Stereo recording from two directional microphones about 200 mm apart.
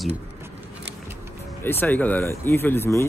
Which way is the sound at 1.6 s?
10° left (ahead or behind).